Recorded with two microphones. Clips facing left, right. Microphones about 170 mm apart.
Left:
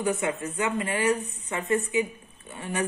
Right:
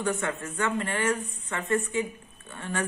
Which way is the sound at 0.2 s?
15° left (ahead or behind).